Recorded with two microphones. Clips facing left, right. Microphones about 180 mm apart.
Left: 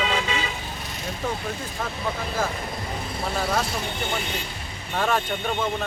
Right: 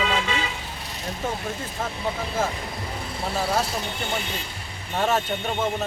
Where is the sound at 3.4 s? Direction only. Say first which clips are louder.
Right 1 dB; 30° right (ahead or behind).